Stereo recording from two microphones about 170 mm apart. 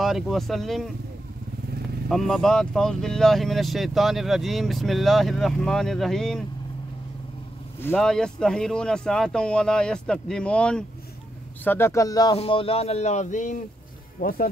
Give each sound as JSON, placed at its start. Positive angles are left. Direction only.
{"t": 0.0, "sound": "speech", "side_deg": 0}
{"t": 2.0, "sound": "speech", "side_deg": 0}
{"t": 7.8, "sound": "speech", "side_deg": 5}
{"t": 12.4, "sound": "speech", "side_deg": 35}
{"t": 14.2, "sound": "speech", "side_deg": 55}